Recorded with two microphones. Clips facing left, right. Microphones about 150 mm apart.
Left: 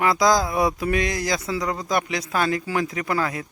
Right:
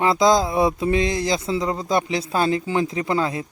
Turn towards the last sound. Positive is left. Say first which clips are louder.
# right 3 dB
turn(degrees=-25)  # may be behind; listen again after turning